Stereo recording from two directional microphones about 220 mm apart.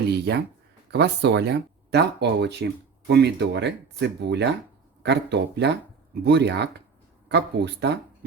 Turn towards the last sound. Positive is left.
turn(degrees=-50)  # may be behind; listen again after turning